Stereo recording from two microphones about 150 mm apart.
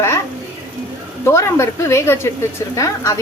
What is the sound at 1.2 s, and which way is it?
A woman's voice, 15° left (ahead or behind).